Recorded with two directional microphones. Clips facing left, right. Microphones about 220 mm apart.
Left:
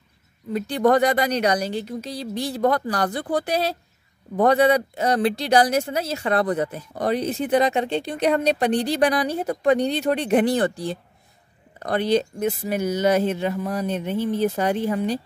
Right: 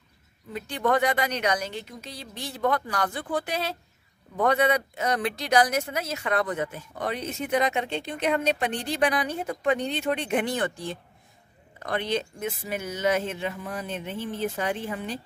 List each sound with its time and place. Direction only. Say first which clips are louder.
0.5 s speech: left 7 dB; 40° left (ahead or behind)